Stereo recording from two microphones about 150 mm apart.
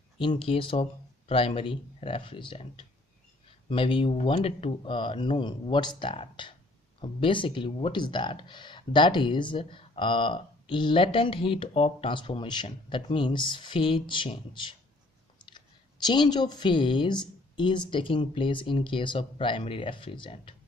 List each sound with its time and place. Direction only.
0.2 s speech: 35° left (ahead or behind)